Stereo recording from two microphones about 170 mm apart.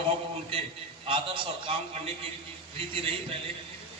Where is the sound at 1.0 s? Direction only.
30° right (ahead or behind).